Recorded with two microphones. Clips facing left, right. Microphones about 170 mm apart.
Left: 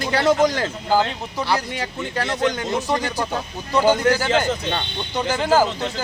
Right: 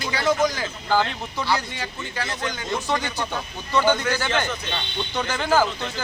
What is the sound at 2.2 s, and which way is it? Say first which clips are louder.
Speech: left 8 dB; 60° left (ahead or behind).